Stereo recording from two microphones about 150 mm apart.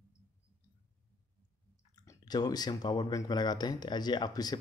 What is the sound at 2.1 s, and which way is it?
Speech, 25° left (ahead or behind).